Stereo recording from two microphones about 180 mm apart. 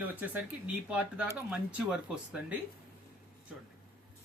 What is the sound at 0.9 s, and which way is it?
Speech, 5° right (ahead or behind).